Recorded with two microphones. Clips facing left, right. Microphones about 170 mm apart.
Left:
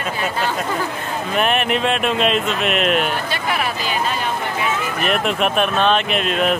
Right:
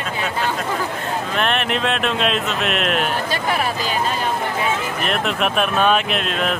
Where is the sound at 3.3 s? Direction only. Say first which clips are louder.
Right 1 dB; 40° right (ahead or behind).